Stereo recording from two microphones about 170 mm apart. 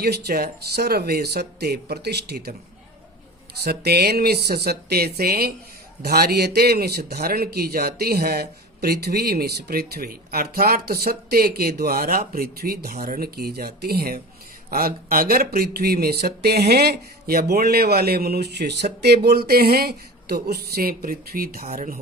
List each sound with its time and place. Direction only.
0.0 s speech: 70° right (ahead or behind)
3.6 s a man's voice: 70° right (ahead or behind); by 21.9 s 55° right (ahead or behind)